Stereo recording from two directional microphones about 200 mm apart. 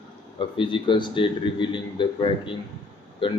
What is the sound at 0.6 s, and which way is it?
Speech, 25° left (ahead or behind).